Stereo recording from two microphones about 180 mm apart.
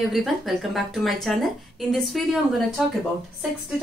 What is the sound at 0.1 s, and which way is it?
A woman's voice, centre (ahead or behind).